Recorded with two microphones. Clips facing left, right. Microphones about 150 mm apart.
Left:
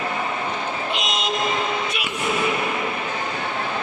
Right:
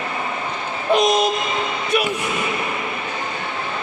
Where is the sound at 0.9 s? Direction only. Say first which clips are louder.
Right 10 dB; 50° right (ahead or behind).